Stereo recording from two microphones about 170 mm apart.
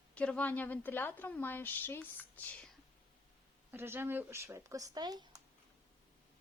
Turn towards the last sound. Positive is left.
turn(degrees=-25)  # may be behind; listen again after turning